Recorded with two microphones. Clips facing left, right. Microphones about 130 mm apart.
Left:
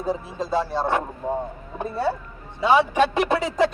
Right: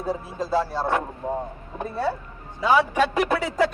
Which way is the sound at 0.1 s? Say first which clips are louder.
Even; 20° left (ahead or behind).